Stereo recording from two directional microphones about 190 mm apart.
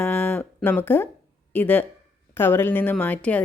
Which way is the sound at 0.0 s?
10° left (ahead or behind).